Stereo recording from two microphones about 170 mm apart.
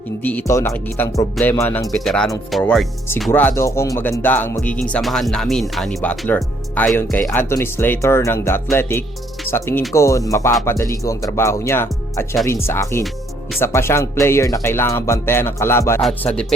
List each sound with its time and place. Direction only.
0.2 s speech: 10° left (ahead or behind)
2.0 s speech: centre (ahead or behind)
3.3 s speech: 15° left (ahead or behind)
16.0 s speech: 5° left (ahead or behind)